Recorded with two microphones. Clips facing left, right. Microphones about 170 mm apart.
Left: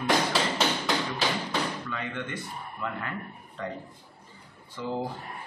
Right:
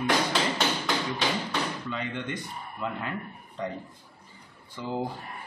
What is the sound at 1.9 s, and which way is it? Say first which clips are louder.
A man's voice: right 1 dB; 20° right (ahead or behind).